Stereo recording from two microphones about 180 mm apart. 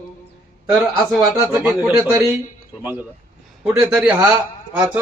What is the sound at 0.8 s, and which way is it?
Speech, centre (ahead or behind).